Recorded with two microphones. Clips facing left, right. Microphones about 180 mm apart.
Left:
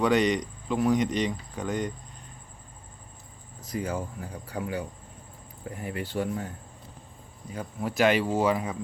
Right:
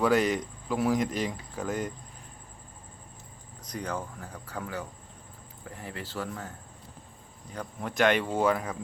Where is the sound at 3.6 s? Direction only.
5° left (ahead or behind).